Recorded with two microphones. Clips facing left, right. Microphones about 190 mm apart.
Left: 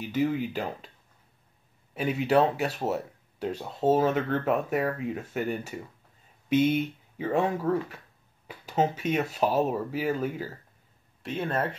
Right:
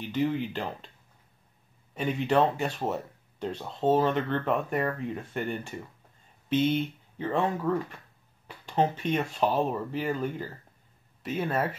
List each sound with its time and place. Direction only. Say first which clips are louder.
0.0 s speech: left 1 dB; 5° left (ahead or behind)
2.0 s speech: left 1 dB; 5° left (ahead or behind)
11.2 s speech: even; 5° right (ahead or behind)